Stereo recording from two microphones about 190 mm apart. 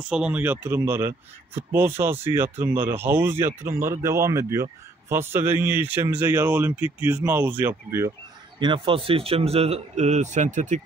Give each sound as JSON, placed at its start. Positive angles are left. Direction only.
{"t": 0.1, "sound": "speech", "side_deg": -5}
{"t": 8.5, "sound": "a man's voice", "side_deg": -25}